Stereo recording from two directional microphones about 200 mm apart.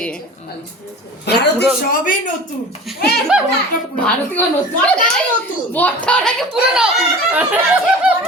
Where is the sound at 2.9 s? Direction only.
Centre (ahead or behind).